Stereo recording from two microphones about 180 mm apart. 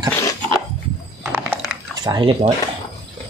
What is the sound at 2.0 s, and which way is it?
Speech, 25° right (ahead or behind).